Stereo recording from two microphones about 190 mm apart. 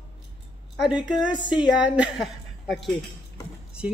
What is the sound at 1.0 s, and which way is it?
Speech, 5° right (ahead or behind).